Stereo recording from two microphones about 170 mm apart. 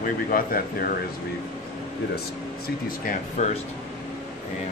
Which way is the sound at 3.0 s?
45° left (ahead or behind).